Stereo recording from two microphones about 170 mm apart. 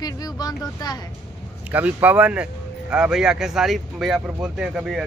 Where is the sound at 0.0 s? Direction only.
20° left (ahead or behind).